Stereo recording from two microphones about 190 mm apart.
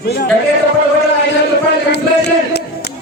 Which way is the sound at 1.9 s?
60° left (ahead or behind).